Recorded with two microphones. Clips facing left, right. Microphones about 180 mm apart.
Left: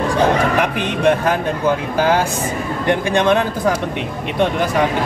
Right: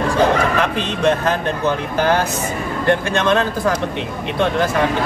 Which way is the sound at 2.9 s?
15° left (ahead or behind).